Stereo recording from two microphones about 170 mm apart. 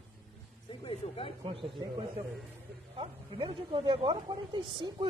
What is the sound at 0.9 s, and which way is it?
Speech, 30° left (ahead or behind).